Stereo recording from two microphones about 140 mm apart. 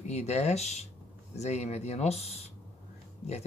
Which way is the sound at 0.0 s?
50° left (ahead or behind).